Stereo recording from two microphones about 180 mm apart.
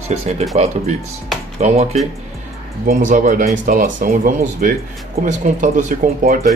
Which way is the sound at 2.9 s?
50° right (ahead or behind).